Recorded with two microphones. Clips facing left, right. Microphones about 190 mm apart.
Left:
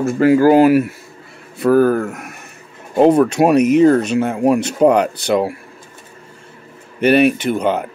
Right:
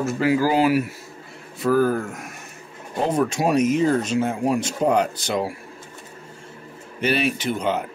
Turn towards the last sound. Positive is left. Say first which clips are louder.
# left 6 dB
turn(degrees=55)  # may be behind; listen again after turning